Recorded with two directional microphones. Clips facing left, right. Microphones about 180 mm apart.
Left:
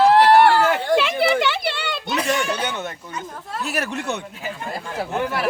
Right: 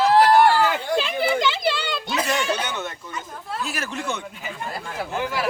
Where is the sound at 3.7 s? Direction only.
65° left (ahead or behind).